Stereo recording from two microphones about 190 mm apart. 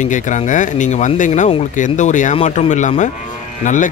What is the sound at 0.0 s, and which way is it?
Speech, 40° left (ahead or behind).